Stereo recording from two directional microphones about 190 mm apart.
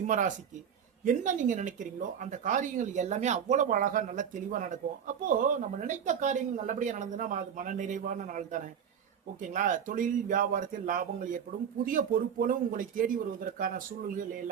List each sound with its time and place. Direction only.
0.0 s speech: 40° right (ahead or behind)